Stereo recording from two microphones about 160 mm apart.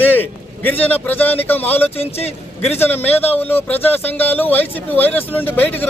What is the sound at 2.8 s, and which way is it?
Speech, 10° left (ahead or behind).